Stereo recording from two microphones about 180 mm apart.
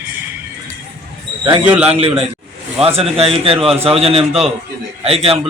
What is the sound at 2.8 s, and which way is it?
A man's voice, 35° right (ahead or behind).